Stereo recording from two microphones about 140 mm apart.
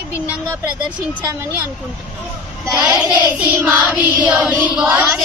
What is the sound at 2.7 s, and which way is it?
Child singing, 15° right (ahead or behind).